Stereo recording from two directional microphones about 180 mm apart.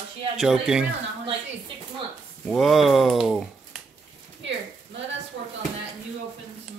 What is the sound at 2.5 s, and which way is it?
A man's voice, centre (ahead or behind).